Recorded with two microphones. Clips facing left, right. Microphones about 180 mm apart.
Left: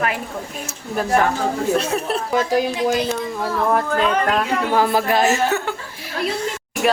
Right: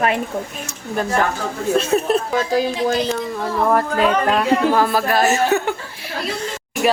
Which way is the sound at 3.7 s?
Centre (ahead or behind).